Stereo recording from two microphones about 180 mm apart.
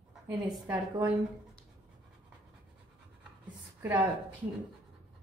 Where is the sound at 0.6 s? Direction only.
10° right (ahead or behind).